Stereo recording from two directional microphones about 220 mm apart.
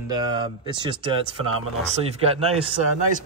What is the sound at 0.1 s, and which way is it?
Speech, 20° right (ahead or behind).